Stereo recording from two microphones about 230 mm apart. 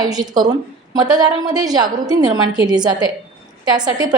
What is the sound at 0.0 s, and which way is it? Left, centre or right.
A woman's voice, centre.